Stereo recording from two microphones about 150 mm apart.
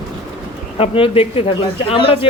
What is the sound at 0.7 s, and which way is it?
Speech, 35° left (ahead or behind).